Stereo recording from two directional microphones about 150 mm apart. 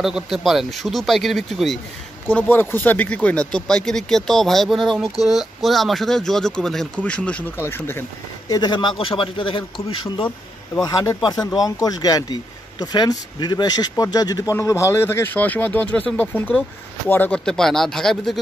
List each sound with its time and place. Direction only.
0.0 s speech: centre (ahead or behind)
2.2 s speech: 10° left (ahead or behind)
8.5 s a man's voice: 25° left (ahead or behind); by 18.4 s centre (ahead or behind)